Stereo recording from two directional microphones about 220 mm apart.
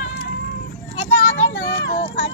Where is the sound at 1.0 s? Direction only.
60° left (ahead or behind).